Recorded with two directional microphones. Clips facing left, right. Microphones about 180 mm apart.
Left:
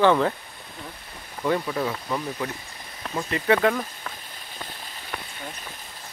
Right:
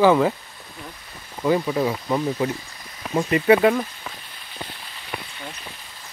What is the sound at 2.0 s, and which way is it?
Speech, 25° right (ahead or behind).